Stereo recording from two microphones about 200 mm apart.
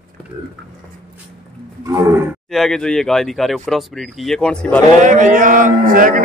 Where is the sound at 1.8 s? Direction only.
15° right (ahead or behind).